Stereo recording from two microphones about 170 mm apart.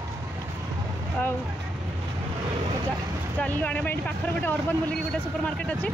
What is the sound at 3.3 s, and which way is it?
Speech, 10° left (ahead or behind).